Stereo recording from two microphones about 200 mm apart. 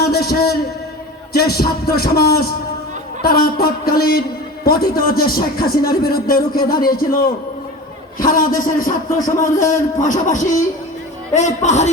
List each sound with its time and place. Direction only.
0.0 s a sound: 50° left (ahead or behind)
1.3 s speech: 50° left (ahead or behind)
8.2 s a man's voice: 45° left (ahead or behind)